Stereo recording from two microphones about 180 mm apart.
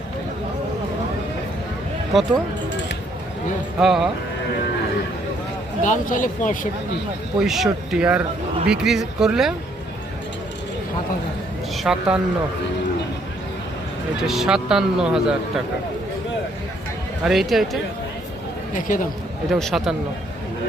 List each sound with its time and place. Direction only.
3.8 s speech: 5° right (ahead or behind)
5.8 s speech: 45° left (ahead or behind)
7.3 s speech: centre (ahead or behind)
11.8 s speech: 5° right (ahead or behind)
14.2 s speech: centre (ahead or behind)
17.2 s speech: centre (ahead or behind)
18.7 s speech: 45° left (ahead or behind)
19.5 s speech: centre (ahead or behind)